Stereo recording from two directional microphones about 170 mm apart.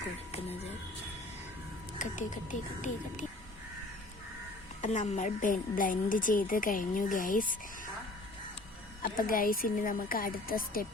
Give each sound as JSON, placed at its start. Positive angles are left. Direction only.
{"t": 2.0, "sound": "a woman's voice", "side_deg": 50}
{"t": 4.8, "sound": "a woman's voice", "side_deg": 45}
{"t": 9.0, "sound": "speech", "side_deg": 55}